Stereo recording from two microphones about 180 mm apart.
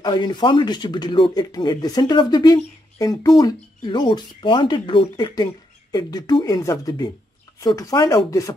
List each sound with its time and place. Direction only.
0.0 s speech: 25° left (ahead or behind)